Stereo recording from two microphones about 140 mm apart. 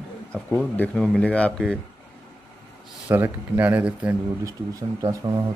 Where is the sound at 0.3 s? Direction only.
10° left (ahead or behind).